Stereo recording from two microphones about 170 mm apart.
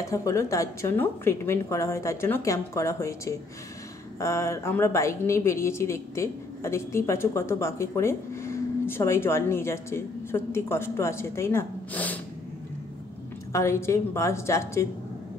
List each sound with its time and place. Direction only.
0.0 s a woman's voice: 20° left (ahead or behind)
13.5 s a woman's voice: 15° left (ahead or behind)